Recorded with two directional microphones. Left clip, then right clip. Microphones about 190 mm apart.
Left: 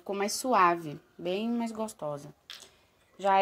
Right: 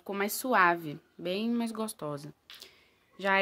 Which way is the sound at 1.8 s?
30° right (ahead or behind).